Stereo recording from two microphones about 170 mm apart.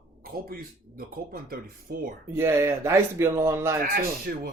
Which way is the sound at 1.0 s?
60° right (ahead or behind).